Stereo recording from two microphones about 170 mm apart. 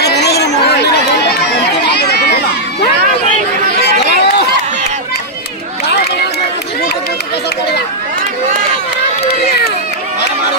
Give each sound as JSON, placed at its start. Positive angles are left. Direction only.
{"t": 0.0, "sound": "chatter", "side_deg": 80}
{"t": 1.9, "sound": "a sound", "side_deg": 75}
{"t": 3.8, "sound": "run", "side_deg": 75}